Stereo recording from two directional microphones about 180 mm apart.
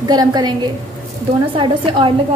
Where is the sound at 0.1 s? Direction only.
20° right (ahead or behind).